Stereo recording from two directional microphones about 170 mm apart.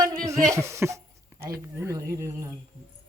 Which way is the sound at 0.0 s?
20° right (ahead or behind).